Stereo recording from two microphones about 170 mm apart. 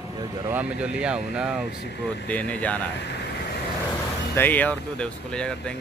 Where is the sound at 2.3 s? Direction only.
10° left (ahead or behind).